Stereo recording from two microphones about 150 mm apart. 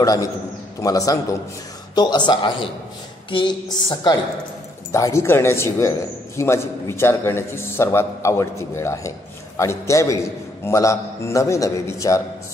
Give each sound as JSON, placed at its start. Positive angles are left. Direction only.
{"t": 0.0, "sound": "a man's voice", "side_deg": 25}
{"t": 3.3, "sound": "a sound", "side_deg": 35}
{"t": 3.7, "sound": "a man's voice", "side_deg": 25}